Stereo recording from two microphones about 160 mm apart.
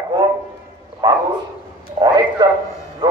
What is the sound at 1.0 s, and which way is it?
Bow-wow, 25° right (ahead or behind).